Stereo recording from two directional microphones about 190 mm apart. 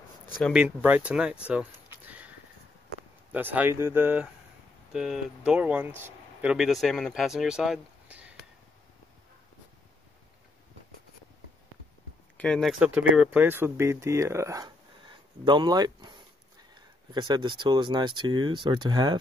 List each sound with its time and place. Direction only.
0.4 s speech: 5° right (ahead or behind)
12.4 s speech: 5° left (ahead or behind); by 19.1 s 20° right (ahead or behind)